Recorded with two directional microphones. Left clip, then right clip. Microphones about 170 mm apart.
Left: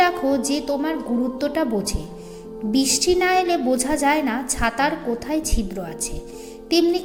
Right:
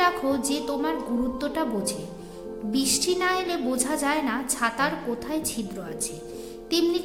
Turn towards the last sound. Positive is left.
turn(degrees=20)  # may be behind; listen again after turning